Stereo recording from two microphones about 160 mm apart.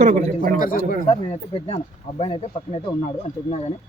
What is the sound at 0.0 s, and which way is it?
Speech, 55° right (ahead or behind).